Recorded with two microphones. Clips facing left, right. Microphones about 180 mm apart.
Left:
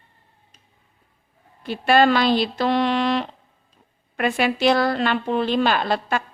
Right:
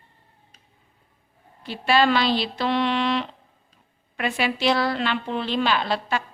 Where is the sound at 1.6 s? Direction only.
50° left (ahead or behind).